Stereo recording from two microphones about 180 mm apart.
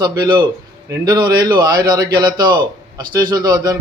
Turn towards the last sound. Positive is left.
turn(degrees=-20)  # may be behind; listen again after turning